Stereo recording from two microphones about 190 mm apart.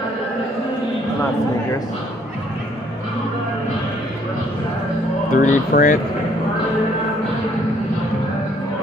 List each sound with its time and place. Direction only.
5.3 s speech: 40° left (ahead or behind)